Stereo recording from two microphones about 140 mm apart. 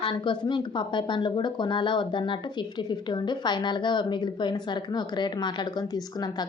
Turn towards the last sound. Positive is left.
turn(degrees=30)  # may be behind; listen again after turning